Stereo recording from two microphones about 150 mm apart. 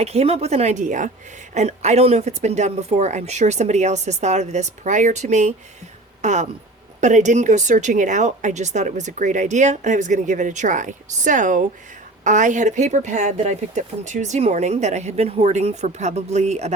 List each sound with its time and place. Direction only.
0.0 s speech: 45° right (ahead or behind)